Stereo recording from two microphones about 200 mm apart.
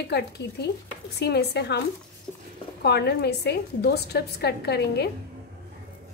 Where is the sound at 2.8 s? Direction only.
55° left (ahead or behind).